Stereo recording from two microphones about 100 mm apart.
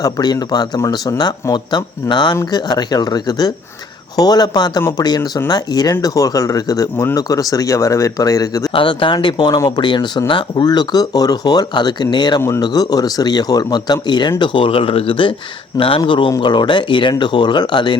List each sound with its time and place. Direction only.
0.0 s speech: 40° left (ahead or behind)
8.7 s speech: 60° left (ahead or behind)
12.4 s speech: 30° left (ahead or behind); by 17.9 s 50° left (ahead or behind)